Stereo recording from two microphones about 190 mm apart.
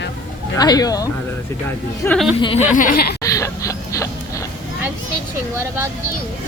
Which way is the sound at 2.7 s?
45° left (ahead or behind).